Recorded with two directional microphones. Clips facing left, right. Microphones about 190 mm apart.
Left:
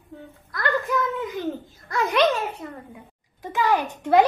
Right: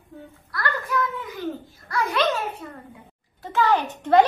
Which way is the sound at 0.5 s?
20° left (ahead or behind).